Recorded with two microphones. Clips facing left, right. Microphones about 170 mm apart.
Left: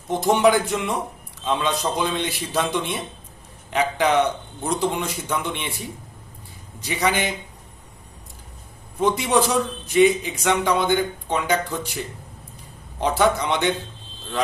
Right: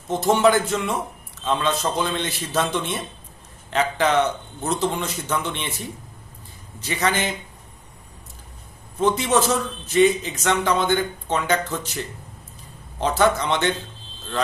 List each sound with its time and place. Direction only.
0.1 s a man's voice: 15° left (ahead or behind)
6.8 s a man's voice: 10° left (ahead or behind)
9.0 s a man's voice: 15° left (ahead or behind)
13.0 s a man's voice: 10° left (ahead or behind)